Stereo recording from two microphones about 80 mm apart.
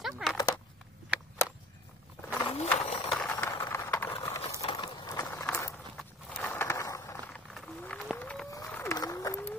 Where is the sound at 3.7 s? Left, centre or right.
Left.